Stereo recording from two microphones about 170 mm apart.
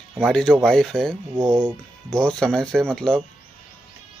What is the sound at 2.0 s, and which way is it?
Speech, 5° left (ahead or behind).